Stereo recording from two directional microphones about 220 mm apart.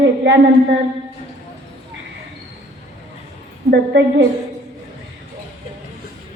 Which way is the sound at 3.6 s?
50° right (ahead or behind).